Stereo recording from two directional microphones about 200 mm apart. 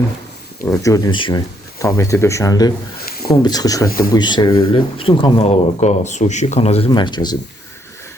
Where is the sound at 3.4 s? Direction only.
20° left (ahead or behind).